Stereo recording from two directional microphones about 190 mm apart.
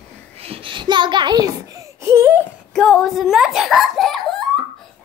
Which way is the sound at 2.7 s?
Centre (ahead or behind).